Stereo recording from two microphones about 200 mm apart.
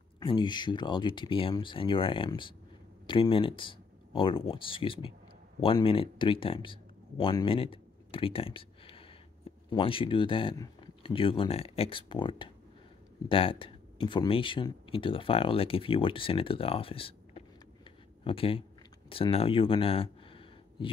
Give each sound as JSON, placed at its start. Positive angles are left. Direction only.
{"t": 0.2, "sound": "speech", "side_deg": 25}
{"t": 17.8, "sound": "a sound", "side_deg": 25}
{"t": 19.0, "sound": "speech", "side_deg": 25}